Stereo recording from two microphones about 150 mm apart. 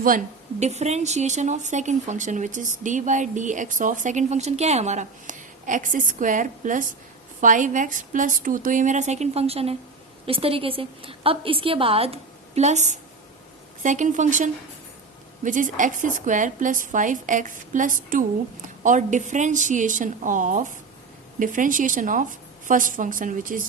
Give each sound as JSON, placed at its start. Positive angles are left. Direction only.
{"t": 0.6, "sound": "a woman's voice", "side_deg": -45}